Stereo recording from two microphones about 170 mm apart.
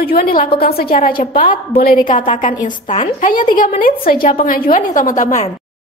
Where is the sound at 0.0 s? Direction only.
60° left (ahead or behind).